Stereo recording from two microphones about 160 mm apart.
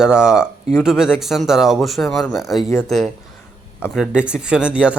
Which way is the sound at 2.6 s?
20° left (ahead or behind).